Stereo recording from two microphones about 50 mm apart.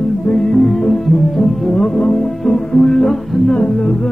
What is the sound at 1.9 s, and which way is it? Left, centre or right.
Music, centre.